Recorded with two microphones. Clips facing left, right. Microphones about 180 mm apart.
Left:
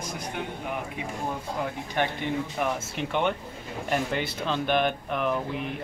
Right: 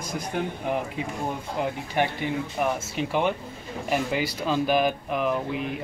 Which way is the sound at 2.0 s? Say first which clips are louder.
Right 1 dB; 15° right (ahead or behind).